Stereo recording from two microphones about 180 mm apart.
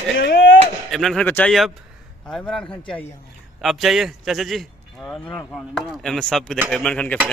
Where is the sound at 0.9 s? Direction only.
Centre (ahead or behind).